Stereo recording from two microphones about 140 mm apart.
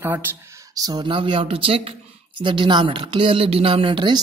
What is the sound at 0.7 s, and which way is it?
Speech, 30° right (ahead or behind).